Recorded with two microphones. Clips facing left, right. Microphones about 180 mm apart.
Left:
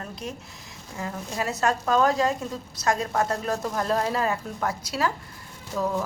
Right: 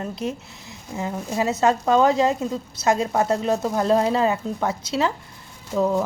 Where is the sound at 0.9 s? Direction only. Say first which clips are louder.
Right 6 dB; 25° right (ahead or behind).